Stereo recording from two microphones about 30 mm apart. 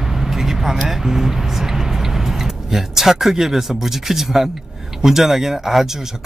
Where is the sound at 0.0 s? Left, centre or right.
Centre.